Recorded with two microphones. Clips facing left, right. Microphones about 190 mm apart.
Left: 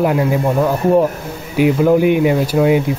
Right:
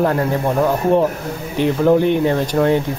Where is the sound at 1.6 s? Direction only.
10° left (ahead or behind).